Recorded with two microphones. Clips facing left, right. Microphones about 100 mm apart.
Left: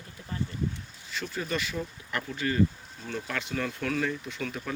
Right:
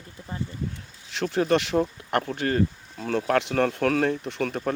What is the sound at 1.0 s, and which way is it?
Speech, 75° right (ahead or behind).